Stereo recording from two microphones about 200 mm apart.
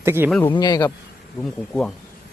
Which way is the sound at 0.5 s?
20° left (ahead or behind).